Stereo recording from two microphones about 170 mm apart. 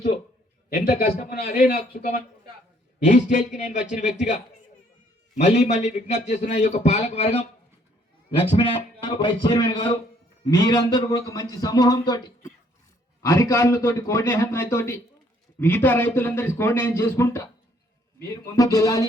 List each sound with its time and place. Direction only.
0.7 s a sound: 60° left (ahead or behind)
1.3 s a man's voice: 60° left (ahead or behind)
3.0 s a man's voice: 50° left (ahead or behind)
5.4 s a man's voice: 40° left (ahead or behind); by 19.0 s 20° left (ahead or behind)